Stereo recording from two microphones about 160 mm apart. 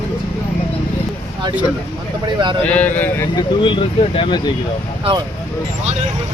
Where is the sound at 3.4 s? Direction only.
30° left (ahead or behind).